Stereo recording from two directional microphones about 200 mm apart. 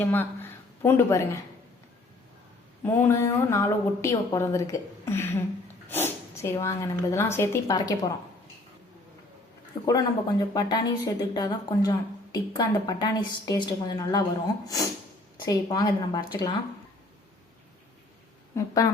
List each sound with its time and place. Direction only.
0.0 s a woman's voice: 10° left (ahead or behind)
2.8 s a woman's voice: 10° left (ahead or behind)
9.8 s a woman's voice: 20° left (ahead or behind)
18.5 s a woman's voice: 15° left (ahead or behind)